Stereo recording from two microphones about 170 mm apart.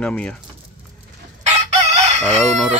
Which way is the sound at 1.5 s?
40° right (ahead or behind).